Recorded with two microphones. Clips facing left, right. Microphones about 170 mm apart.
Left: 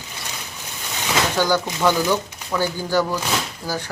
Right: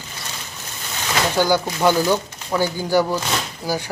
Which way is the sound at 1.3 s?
10° right (ahead or behind).